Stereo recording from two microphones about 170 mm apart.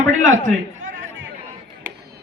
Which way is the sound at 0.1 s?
50° right (ahead or behind).